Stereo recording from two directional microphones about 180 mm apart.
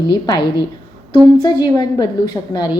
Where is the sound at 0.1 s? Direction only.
25° left (ahead or behind).